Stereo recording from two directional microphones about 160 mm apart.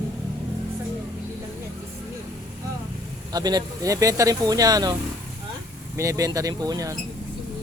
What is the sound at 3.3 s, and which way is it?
Speech, 25° right (ahead or behind).